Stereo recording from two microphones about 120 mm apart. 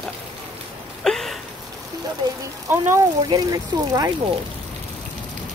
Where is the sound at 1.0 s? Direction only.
5° left (ahead or behind).